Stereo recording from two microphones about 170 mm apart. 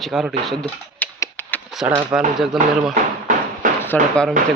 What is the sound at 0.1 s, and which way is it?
Speech, centre (ahead or behind).